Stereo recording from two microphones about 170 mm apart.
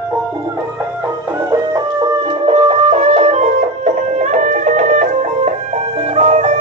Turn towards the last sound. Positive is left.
turn(degrees=-40)  # may be behind; listen again after turning